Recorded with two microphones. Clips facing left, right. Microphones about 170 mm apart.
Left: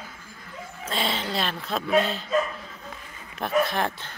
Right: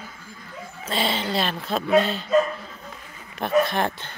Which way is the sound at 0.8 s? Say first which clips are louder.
Right 3 dB; centre (ahead or behind).